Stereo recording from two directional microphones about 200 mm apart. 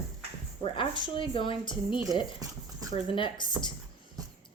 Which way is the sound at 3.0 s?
25° left (ahead or behind).